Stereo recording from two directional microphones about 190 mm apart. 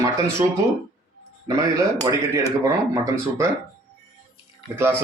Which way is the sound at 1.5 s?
20° right (ahead or behind).